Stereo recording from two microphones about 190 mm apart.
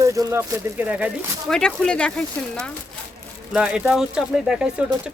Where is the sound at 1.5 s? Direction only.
5° left (ahead or behind).